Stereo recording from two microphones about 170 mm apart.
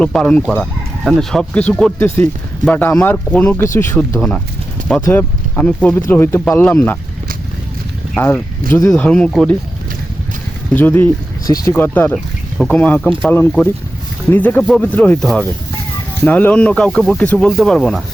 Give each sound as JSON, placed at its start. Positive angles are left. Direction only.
{"t": 0.0, "sound": "speech", "side_deg": 5}
{"t": 8.1, "sound": "speech", "side_deg": 15}
{"t": 9.0, "sound": "speech", "side_deg": 5}
{"t": 10.8, "sound": "speech", "side_deg": 10}